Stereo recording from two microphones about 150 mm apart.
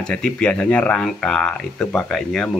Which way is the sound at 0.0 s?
5° left (ahead or behind).